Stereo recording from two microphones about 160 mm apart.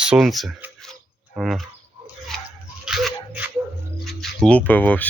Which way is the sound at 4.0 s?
Centre (ahead or behind).